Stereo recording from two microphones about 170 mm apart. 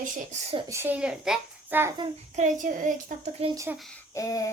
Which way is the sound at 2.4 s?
50° right (ahead or behind).